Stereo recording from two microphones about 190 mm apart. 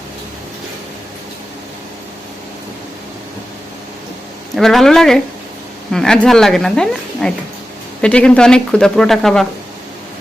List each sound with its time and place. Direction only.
4.5 s a woman's voice: centre (ahead or behind)